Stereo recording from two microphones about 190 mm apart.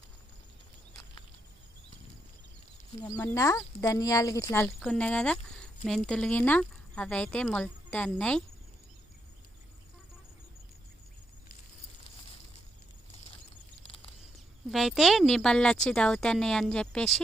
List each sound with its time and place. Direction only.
3.0 s speech: 15° left (ahead or behind)
14.7 s speech: centre (ahead or behind)